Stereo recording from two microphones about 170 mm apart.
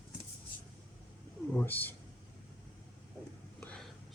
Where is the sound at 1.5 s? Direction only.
10° left (ahead or behind).